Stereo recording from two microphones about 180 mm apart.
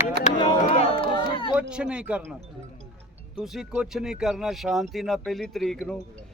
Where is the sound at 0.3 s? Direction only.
30° left (ahead or behind).